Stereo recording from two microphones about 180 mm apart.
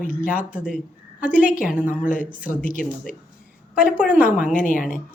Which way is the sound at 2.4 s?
50° left (ahead or behind).